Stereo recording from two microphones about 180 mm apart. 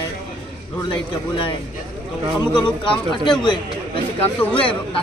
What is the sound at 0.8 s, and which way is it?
Speech, 25° left (ahead or behind).